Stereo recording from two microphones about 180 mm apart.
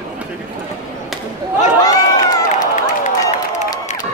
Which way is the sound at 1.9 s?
20° left (ahead or behind).